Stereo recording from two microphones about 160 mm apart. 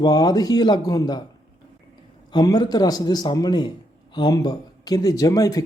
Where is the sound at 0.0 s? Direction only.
25° left (ahead or behind).